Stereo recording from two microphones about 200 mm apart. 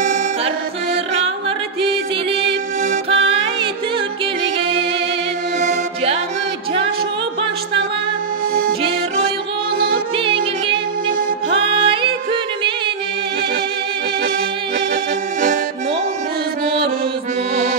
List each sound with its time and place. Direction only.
5.6 s music: 35° right (ahead or behind)
9.8 s music: 25° right (ahead or behind)